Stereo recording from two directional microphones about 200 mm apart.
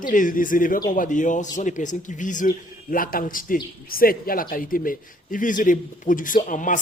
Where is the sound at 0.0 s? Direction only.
40° left (ahead or behind).